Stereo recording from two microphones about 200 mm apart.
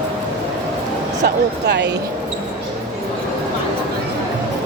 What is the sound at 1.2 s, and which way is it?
Speech, 60° right (ahead or behind).